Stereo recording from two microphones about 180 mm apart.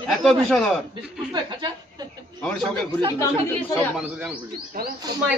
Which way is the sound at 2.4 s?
5° left (ahead or behind).